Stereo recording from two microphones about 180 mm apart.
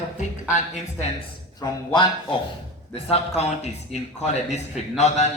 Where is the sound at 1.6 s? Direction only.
25° left (ahead or behind).